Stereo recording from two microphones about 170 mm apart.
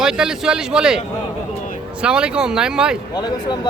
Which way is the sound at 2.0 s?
5° right (ahead or behind).